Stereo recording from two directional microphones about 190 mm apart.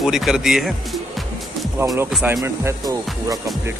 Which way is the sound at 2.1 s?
Centre (ahead or behind).